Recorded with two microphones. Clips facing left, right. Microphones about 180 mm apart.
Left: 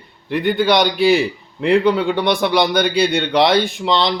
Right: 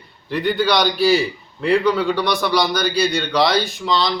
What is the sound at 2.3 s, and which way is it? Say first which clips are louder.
Speech: left 3 dB; 55° left (ahead or behind).